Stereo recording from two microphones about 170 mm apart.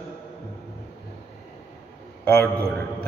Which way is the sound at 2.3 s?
10° left (ahead or behind).